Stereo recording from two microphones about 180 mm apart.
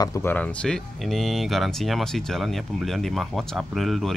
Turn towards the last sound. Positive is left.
turn(degrees=0)  # may be behind; listen again after turning